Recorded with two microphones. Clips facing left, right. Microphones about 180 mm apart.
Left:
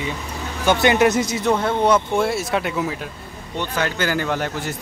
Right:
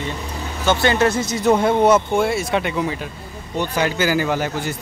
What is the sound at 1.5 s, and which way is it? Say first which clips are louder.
Speech: right 3 dB; 10° right (ahead or behind).